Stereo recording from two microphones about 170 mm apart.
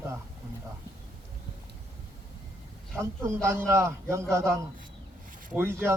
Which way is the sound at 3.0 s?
15° right (ahead or behind).